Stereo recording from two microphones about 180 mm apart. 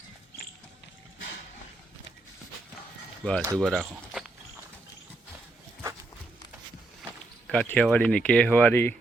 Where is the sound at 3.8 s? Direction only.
5° right (ahead or behind).